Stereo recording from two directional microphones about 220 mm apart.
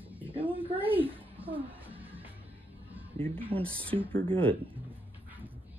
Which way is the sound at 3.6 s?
5° left (ahead or behind).